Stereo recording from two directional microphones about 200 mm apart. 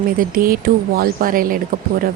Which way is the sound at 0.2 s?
45° right (ahead or behind).